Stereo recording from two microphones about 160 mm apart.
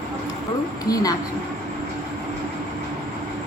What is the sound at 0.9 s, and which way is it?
Speech, 20° left (ahead or behind).